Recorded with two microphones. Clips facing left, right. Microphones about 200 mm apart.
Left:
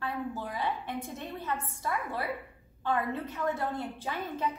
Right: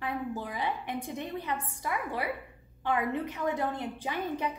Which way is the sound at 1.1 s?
15° right (ahead or behind).